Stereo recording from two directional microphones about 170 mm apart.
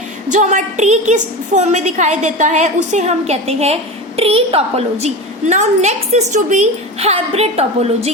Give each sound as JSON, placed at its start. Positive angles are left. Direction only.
{"t": 0.3, "sound": "a woman's voice", "side_deg": -45}